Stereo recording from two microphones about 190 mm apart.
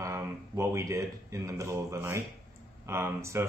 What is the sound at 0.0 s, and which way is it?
Speech, 15° right (ahead or behind).